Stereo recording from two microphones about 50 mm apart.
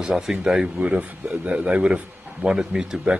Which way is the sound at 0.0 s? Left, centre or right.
Centre.